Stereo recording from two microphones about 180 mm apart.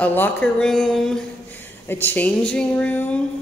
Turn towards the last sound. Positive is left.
turn(degrees=10)  # may be behind; listen again after turning